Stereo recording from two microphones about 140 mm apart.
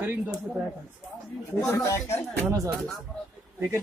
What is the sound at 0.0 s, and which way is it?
Speech, 15° right (ahead or behind).